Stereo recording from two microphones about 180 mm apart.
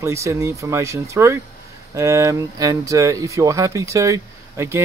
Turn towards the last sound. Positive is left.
turn(degrees=-15)  # may be behind; listen again after turning